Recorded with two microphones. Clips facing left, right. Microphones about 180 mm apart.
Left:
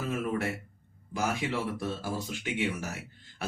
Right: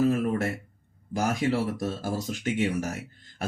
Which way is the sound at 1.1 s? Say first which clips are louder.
Right 5 dB; 40° right (ahead or behind).